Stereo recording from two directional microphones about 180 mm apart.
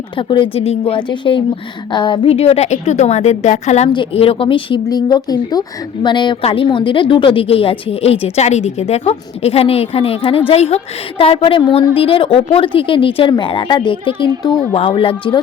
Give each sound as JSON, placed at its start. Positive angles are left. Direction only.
{"t": 0.2, "sound": "a woman's voice", "side_deg": 30}
{"t": 3.9, "sound": "a woman's voice", "side_deg": 30}